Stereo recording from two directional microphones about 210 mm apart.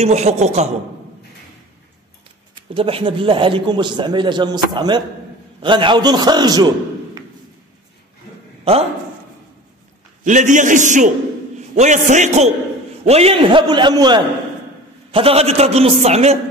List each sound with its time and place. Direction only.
0.0 s a man's voice: 30° right (ahead or behind)
2.5 s a man's voice: 25° right (ahead or behind)
10.2 s a man's voice: 35° right (ahead or behind)